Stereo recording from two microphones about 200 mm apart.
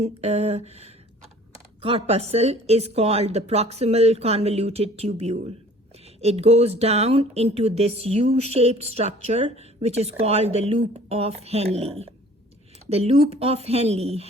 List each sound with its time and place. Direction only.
0.0 s speech: 35° right (ahead or behind)